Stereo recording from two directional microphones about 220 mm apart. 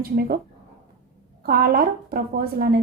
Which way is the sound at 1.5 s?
45° right (ahead or behind).